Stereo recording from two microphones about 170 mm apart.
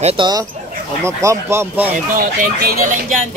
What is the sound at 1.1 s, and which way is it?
Speech, 15° right (ahead or behind).